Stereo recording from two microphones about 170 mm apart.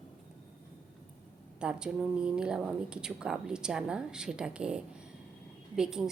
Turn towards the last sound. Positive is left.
turn(degrees=-5)  # may be behind; listen again after turning